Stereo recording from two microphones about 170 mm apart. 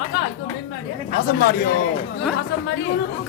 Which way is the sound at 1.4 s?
60° left (ahead or behind).